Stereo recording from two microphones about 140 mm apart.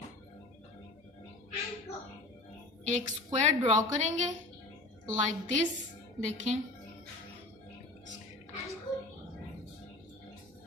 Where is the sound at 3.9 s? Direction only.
55° right (ahead or behind).